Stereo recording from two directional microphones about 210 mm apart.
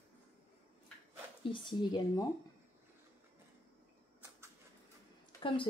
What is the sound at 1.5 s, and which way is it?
Speech, 20° left (ahead or behind).